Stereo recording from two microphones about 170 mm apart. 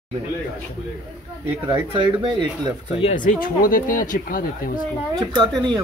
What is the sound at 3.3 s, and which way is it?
Speech, 55° left (ahead or behind).